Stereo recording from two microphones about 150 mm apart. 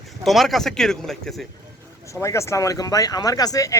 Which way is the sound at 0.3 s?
Centre (ahead or behind).